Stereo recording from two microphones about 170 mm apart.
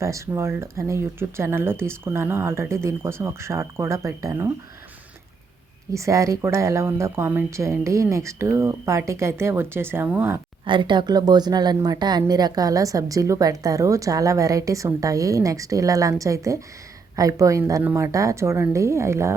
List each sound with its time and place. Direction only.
0.0 s speech: 15° right (ahead or behind)
5.9 s speech: 20° right (ahead or behind)
10.7 s a woman's voice: 30° right (ahead or behind)